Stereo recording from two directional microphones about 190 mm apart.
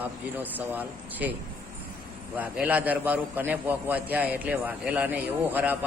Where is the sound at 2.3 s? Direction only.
10° right (ahead or behind).